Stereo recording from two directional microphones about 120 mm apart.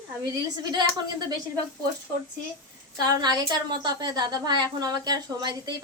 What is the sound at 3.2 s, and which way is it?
A woman's voice, 35° right (ahead or behind).